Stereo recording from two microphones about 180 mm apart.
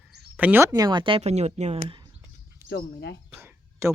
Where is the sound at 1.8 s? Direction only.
25° right (ahead or behind).